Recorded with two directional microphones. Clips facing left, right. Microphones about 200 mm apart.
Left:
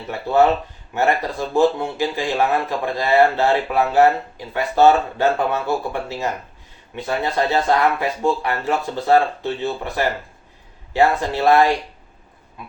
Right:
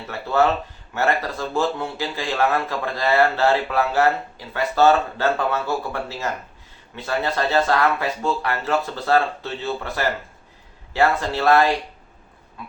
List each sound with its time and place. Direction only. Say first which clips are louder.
0.1 s a man's voice: left 4 dB; 15° left (ahead or behind)